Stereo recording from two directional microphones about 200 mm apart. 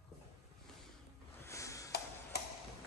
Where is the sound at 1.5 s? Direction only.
15° left (ahead or behind).